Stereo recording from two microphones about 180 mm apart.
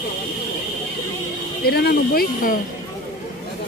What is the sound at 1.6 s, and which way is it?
Speech, 60° left (ahead or behind).